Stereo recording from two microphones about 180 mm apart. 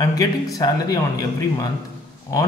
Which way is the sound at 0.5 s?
20° left (ahead or behind).